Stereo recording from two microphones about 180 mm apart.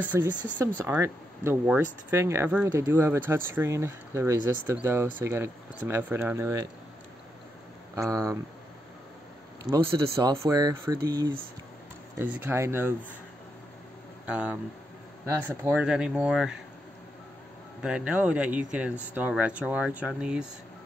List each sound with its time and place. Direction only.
0.1 s speech: 15° right (ahead or behind)
7.9 s speech: 15° right (ahead or behind)
9.7 s speech: 20° right (ahead or behind)
12.2 s speech: 10° right (ahead or behind)
14.2 s speech: 5° right (ahead or behind)
17.8 s speech: 5° right (ahead or behind)